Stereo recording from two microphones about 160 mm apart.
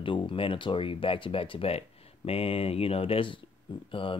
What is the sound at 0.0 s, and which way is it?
Speech, 30° left (ahead or behind).